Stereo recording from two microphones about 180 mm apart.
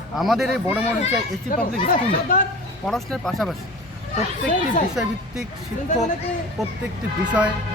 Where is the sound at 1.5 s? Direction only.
50° left (ahead or behind).